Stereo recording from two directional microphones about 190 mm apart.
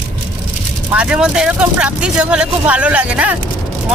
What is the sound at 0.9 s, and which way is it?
Speech, 5° right (ahead or behind).